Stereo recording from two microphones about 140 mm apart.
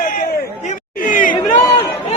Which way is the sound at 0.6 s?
65° left (ahead or behind).